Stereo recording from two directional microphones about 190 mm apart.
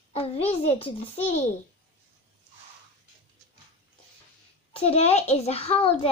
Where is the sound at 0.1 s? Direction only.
30° left (ahead or behind).